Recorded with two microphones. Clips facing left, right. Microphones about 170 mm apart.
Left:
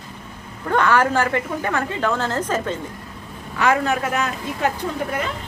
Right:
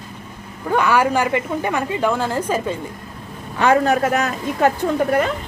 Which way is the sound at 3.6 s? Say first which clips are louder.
Right 4 dB; 35° right (ahead or behind).